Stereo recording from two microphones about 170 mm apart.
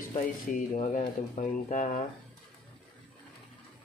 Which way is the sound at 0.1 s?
45° left (ahead or behind).